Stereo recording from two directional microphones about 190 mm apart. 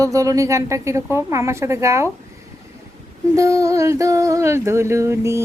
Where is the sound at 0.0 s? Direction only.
15° right (ahead or behind).